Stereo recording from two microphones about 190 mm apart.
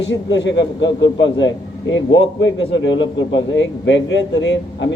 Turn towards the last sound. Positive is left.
turn(degrees=70)  # may be behind; listen again after turning